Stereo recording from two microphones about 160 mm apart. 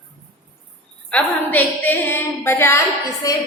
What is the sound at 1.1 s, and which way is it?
A woman's voice, 10° left (ahead or behind).